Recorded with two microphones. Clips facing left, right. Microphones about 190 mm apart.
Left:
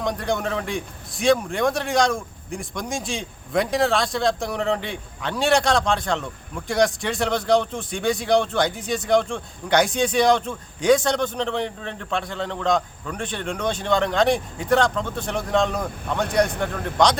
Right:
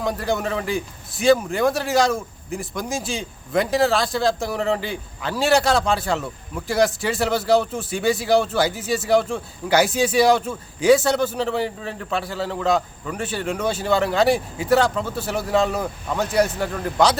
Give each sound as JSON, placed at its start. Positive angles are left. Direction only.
{"t": 0.0, "sound": "a man's voice", "side_deg": -5}